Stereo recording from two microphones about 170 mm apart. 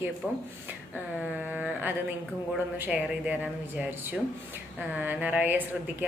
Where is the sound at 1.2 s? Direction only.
10° right (ahead or behind).